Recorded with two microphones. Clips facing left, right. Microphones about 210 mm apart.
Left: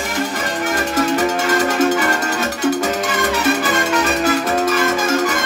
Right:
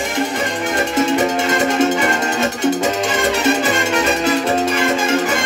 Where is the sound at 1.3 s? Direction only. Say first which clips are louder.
Right 1 dB; 25° right (ahead or behind).